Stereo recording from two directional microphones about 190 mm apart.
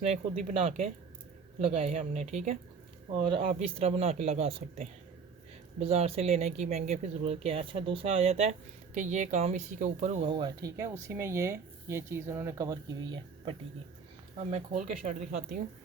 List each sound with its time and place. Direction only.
0.0 s speech: 35° right (ahead or behind)
10.2 s speech: 25° right (ahead or behind)
14.3 s speech: 35° right (ahead or behind)